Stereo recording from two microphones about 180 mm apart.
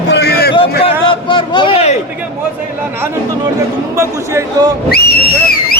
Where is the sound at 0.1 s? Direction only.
65° left (ahead or behind).